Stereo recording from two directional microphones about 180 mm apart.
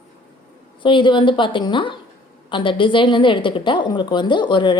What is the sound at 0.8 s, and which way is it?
A woman's voice, 25° left (ahead or behind).